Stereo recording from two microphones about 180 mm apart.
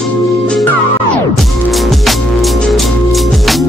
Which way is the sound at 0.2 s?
Centre (ahead or behind).